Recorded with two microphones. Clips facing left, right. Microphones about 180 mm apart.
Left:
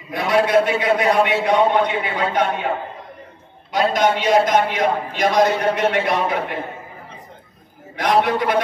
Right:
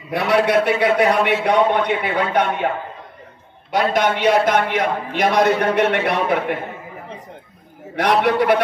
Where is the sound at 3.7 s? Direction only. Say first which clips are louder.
Even; 65° right (ahead or behind).